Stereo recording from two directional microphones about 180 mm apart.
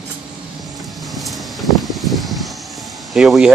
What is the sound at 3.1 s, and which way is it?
Speech, centre (ahead or behind).